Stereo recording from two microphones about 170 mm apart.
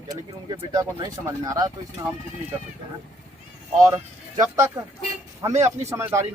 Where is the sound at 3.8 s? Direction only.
20° right (ahead or behind).